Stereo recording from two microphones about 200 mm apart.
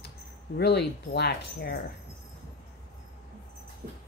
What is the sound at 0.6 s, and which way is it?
Speech, 55° left (ahead or behind).